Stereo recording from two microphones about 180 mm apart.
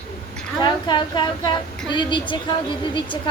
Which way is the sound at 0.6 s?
25° left (ahead or behind).